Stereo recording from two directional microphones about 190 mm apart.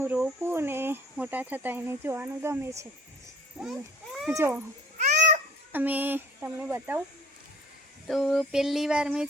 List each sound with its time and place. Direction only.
0.0 s speech: 10° right (ahead or behind)
4.3 s speech: 10° right (ahead or behind)
4.9 s babbling: 40° right (ahead or behind)
5.7 s speech: 10° right (ahead or behind)
8.0 s a sound: centre (ahead or behind)